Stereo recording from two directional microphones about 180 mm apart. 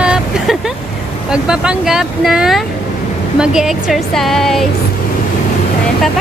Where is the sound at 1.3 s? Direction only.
5° right (ahead or behind).